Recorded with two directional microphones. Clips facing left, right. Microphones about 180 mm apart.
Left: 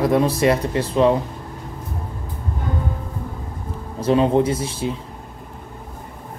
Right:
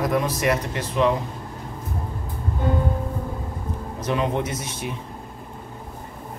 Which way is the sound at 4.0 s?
30° left (ahead or behind).